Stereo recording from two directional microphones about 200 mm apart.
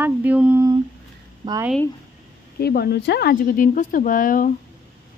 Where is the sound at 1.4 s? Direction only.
20° right (ahead or behind).